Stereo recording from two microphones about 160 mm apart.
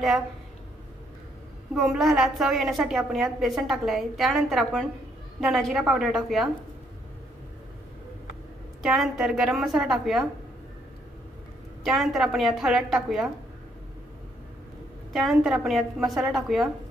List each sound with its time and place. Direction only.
1.8 s a woman's voice: centre (ahead or behind)
8.8 s a woman's voice: centre (ahead or behind)
11.8 s a woman's voice: centre (ahead or behind)
15.1 s a woman's voice: centre (ahead or behind)